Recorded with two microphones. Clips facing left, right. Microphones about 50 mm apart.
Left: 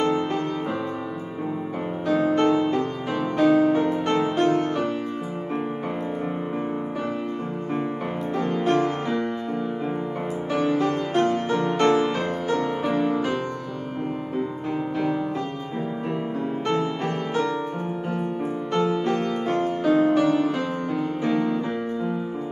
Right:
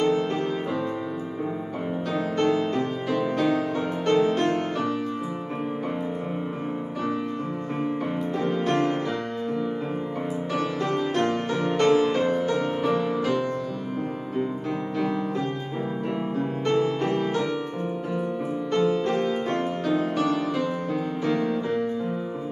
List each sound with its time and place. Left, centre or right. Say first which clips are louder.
0.0 s music: even; centre
2.0 s music: left 5 dB; centre
8.4 s music: left 3 dB; centre
10.5 s music: left 5 dB; centre
16.7 s music: right 4 dB; left
18.8 s music: even; centre
19.0 s music: left 1 dB; centre